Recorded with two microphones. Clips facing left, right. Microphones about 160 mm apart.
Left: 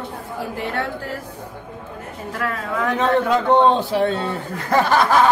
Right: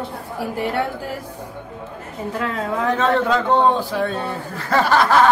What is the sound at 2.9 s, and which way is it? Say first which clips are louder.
A man's voice: left 2 dB; 15° left (ahead or behind).